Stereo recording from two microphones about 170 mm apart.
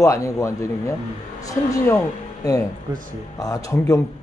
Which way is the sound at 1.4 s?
15° left (ahead or behind).